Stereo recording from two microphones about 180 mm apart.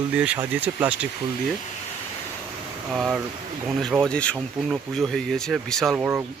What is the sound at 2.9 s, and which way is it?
Speech, centre (ahead or behind).